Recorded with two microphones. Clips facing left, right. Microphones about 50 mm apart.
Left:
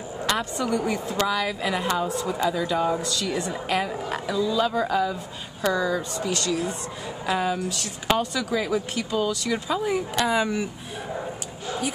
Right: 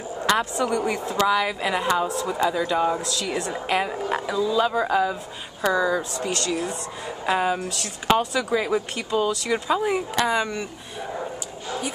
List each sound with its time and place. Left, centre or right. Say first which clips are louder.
0.3 s speech: right 3 dB; centre
3.6 s speech: right 4 dB; centre
7.2 s a woman's voice: right 2 dB; centre
8.1 s speech: right 3 dB; centre